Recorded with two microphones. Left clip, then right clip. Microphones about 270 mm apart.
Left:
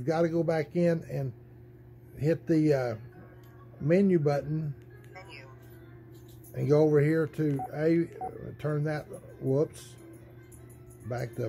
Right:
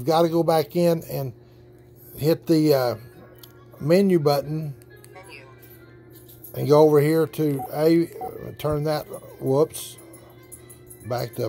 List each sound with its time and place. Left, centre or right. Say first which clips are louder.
0.0 s speech: right 8 dB; centre
6.5 s speech: right 8 dB; centre
11.1 s speech: right 8 dB; centre